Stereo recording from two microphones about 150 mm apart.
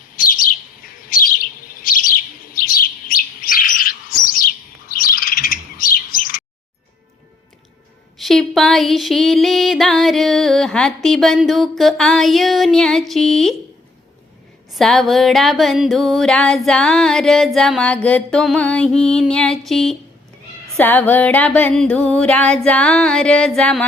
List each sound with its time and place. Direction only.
0.2 s chirp: 65° left (ahead or behind)
8.2 s music: centre (ahead or behind)
14.8 s music: centre (ahead or behind)
20.7 s a sound: 10° left (ahead or behind)